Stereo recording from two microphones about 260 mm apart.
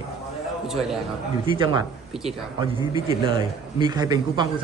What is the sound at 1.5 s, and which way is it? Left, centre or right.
Speech, centre.